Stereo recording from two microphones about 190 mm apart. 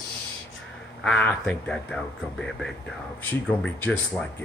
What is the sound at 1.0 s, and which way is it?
Speech, 5° left (ahead or behind).